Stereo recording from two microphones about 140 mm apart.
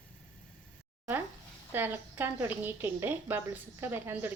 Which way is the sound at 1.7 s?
15° right (ahead or behind).